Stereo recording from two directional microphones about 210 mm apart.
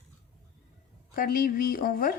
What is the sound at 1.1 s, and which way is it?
A woman's voice, 45° left (ahead or behind).